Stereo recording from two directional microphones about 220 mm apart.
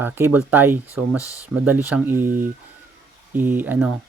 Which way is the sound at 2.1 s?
40° right (ahead or behind).